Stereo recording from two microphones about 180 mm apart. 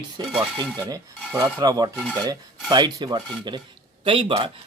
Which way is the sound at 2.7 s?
25° right (ahead or behind).